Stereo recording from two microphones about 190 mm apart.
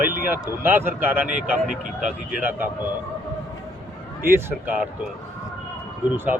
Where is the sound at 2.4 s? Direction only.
10° right (ahead or behind).